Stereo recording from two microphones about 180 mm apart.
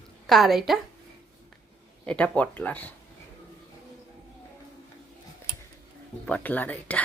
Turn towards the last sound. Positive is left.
turn(degrees=10)  # may be behind; listen again after turning